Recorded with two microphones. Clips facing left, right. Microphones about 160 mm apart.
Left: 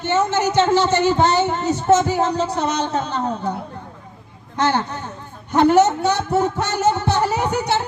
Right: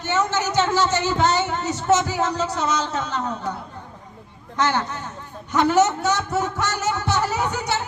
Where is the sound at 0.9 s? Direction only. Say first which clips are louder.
Left 4 dB; 55° left (ahead or behind).